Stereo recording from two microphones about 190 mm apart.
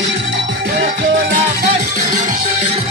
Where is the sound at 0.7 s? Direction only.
45° right (ahead or behind).